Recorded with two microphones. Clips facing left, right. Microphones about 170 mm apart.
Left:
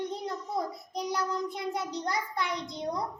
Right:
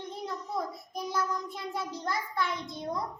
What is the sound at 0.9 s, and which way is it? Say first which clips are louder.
Child singing: left 1 dB; 20° left (ahead or behind).